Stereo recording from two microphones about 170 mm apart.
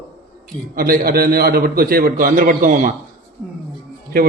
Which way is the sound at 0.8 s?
60° right (ahead or behind).